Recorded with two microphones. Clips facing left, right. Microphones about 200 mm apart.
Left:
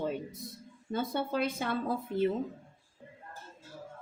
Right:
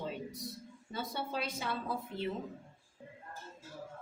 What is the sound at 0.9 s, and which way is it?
A woman's voice, 50° left (ahead or behind).